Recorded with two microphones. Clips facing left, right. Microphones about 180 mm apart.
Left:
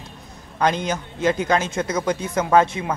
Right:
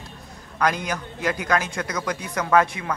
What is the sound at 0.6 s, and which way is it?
A man's voice, 25° left (ahead or behind).